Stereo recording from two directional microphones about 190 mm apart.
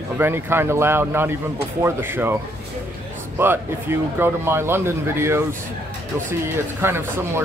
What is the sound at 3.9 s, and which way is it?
Speech, 15° right (ahead or behind).